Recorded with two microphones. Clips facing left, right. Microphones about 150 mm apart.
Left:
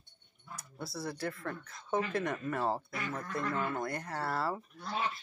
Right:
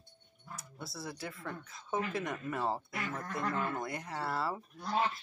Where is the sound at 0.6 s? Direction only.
Centre (ahead or behind).